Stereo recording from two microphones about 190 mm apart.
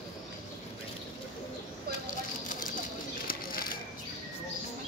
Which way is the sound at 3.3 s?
50° left (ahead or behind).